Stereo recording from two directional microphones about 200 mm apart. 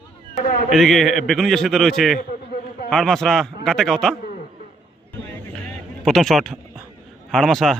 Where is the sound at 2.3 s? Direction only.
50° left (ahead or behind).